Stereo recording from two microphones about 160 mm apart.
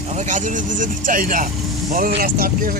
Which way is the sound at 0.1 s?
50° right (ahead or behind).